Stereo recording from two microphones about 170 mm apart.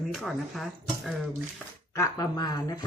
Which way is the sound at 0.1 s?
Centre (ahead or behind).